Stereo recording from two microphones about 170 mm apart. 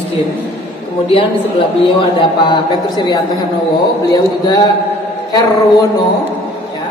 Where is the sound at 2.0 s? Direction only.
30° left (ahead or behind).